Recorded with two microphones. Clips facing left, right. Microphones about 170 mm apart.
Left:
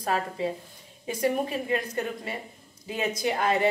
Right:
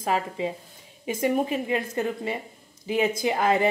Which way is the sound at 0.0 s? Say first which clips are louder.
Right 1 dB; 15° right (ahead or behind).